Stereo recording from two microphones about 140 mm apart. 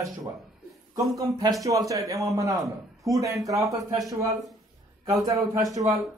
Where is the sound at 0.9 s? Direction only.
25° right (ahead or behind).